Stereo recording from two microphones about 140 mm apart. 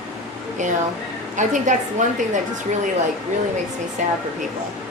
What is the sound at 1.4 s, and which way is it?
Speech, 60° right (ahead or behind).